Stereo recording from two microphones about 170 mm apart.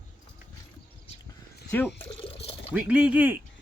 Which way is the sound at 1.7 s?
10° left (ahead or behind).